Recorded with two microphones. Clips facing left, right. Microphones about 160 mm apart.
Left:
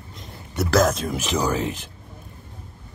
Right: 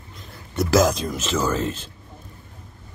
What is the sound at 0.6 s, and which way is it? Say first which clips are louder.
Speech: right 1 dB; centre (ahead or behind).